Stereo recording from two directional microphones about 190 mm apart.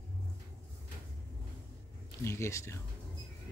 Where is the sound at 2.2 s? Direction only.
15° left (ahead or behind).